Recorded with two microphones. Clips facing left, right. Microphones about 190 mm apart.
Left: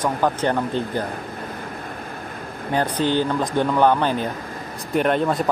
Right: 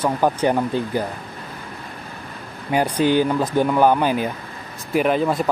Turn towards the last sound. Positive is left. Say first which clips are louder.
# right 1 dB
turn(degrees=0)  # may be behind; listen again after turning